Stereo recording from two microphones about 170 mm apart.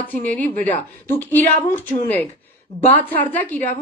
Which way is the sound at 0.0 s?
10° left (ahead or behind).